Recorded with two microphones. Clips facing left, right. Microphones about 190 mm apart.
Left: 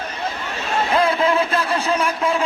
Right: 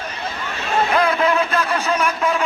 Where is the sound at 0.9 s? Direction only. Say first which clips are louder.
Left 1 dB; 30° left (ahead or behind).